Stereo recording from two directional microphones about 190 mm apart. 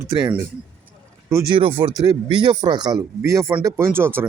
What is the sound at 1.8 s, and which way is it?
Speech, 20° right (ahead or behind).